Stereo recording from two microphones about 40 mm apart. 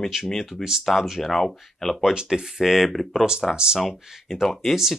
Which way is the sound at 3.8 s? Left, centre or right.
Centre.